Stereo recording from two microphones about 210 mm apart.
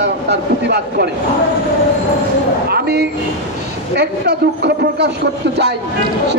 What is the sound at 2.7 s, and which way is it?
A man's voice, 50° right (ahead or behind).